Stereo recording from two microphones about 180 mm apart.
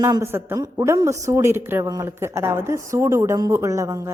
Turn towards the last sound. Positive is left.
turn(degrees=-15)  # may be behind; listen again after turning